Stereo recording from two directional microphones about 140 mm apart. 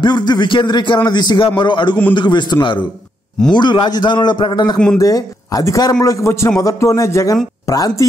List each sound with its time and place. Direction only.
0.0 s speech: 30° left (ahead or behind)